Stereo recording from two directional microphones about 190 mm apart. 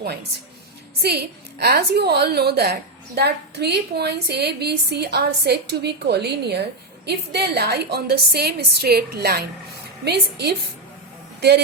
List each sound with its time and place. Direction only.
0.9 s a woman's voice: 60° right (ahead or behind)